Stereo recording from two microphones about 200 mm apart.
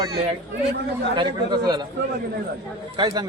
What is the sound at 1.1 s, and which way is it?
Speech, 20° right (ahead or behind).